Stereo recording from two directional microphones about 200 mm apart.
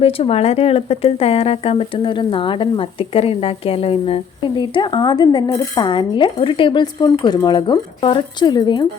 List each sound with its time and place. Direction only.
0.0 s speech: 30° left (ahead or behind)